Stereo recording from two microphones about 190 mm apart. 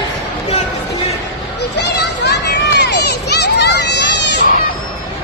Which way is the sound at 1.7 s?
60° left (ahead or behind).